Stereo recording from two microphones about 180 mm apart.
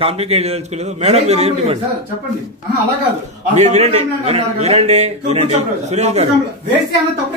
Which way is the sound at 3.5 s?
40° right (ahead or behind).